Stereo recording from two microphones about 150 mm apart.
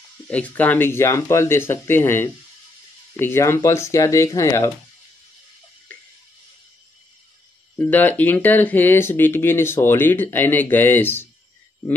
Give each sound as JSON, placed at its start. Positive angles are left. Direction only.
{"t": 0.3, "sound": "speech", "side_deg": 10}
{"t": 7.7, "sound": "speech", "side_deg": 10}